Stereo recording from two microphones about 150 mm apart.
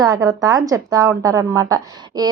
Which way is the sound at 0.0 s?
25° right (ahead or behind).